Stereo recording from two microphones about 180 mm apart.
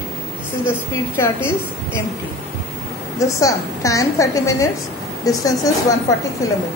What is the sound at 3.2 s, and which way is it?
A woman's voice, 15° left (ahead or behind).